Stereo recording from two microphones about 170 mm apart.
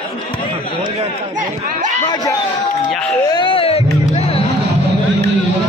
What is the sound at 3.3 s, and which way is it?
Music, 30° left (ahead or behind).